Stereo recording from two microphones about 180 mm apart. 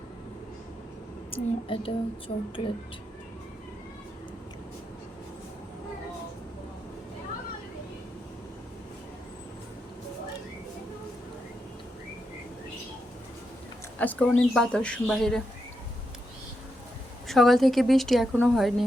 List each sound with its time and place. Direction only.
1.3 s speech: 30° left (ahead or behind)
14.0 s speech: 10° left (ahead or behind)
17.2 s speech: centre (ahead or behind)